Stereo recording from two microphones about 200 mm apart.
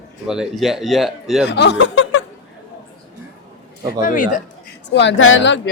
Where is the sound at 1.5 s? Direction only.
60° left (ahead or behind).